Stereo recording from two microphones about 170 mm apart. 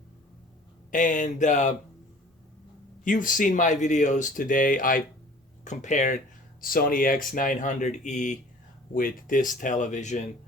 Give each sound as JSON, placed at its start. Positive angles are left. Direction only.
{"t": 0.9, "sound": "speech", "side_deg": 50}
{"t": 3.0, "sound": "speech", "side_deg": 50}
{"t": 6.6, "sound": "speech", "side_deg": 55}